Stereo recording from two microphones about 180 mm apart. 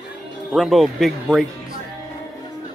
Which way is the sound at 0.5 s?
Centre (ahead or behind).